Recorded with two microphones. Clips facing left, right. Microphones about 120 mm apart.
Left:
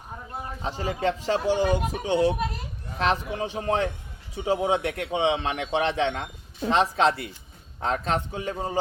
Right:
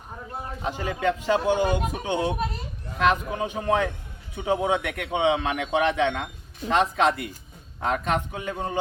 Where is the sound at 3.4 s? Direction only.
30° left (ahead or behind).